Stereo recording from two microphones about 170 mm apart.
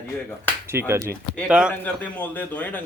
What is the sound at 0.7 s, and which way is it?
Speech, 15° right (ahead or behind).